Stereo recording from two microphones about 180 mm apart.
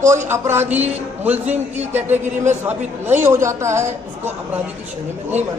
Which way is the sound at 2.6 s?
10° right (ahead or behind).